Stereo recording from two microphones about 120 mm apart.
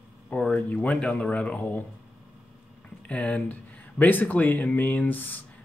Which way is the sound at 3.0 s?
10° left (ahead or behind).